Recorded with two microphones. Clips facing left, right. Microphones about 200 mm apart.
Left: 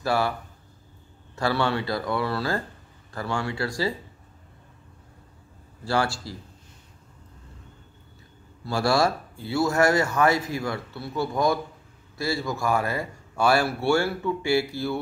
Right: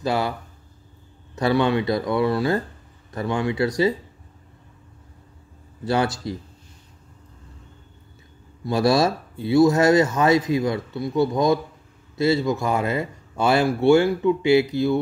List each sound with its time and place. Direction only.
0.0 s speech: 20° right (ahead or behind)
1.3 s speech: 20° right (ahead or behind)
5.9 s speech: 20° right (ahead or behind)
8.6 s speech: 20° right (ahead or behind)